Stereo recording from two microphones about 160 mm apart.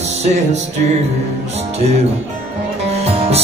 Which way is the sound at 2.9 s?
40° right (ahead or behind).